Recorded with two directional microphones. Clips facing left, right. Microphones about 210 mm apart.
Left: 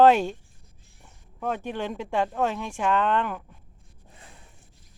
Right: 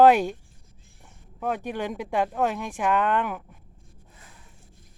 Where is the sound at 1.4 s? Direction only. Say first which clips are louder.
Right 1 dB; 10° right (ahead or behind).